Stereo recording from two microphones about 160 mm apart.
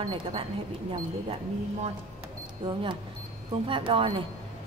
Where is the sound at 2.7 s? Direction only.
30° right (ahead or behind).